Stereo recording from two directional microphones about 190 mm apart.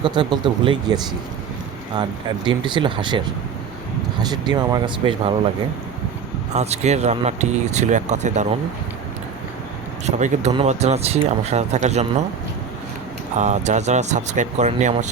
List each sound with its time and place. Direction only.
0.0 s speech: 25° right (ahead or behind)
2.0 s speech: 25° right (ahead or behind)
4.3 s speech: 20° right (ahead or behind)
6.5 s speech: 35° right (ahead or behind)
10.1 s speech: 40° right (ahead or behind)
13.3 s speech: 35° right (ahead or behind)